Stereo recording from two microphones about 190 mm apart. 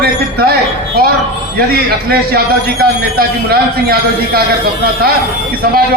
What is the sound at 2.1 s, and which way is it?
A man's voice, 55° right (ahead or behind).